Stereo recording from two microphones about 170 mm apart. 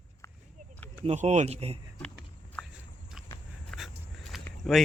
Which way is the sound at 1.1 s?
40° right (ahead or behind).